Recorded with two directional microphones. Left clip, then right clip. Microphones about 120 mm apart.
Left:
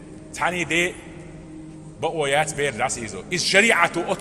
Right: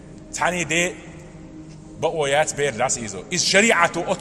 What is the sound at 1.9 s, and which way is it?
A man's voice, 30° right (ahead or behind).